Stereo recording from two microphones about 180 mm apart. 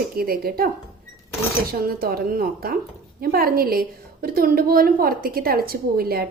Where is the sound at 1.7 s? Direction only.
55° right (ahead or behind).